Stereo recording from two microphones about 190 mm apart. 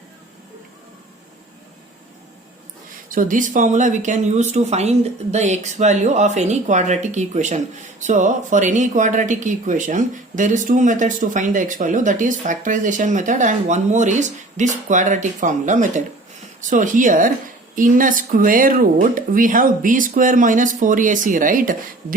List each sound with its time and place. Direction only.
3.1 s speech: 45° right (ahead or behind)